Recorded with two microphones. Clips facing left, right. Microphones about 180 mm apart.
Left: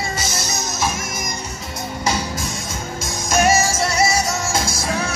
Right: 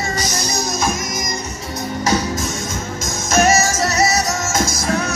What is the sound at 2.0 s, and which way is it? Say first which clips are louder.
Music: right 4 dB; 10° left (ahead or behind).